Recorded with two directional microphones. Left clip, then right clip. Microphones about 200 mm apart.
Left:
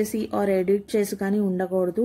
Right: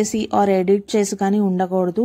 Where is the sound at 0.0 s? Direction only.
40° right (ahead or behind).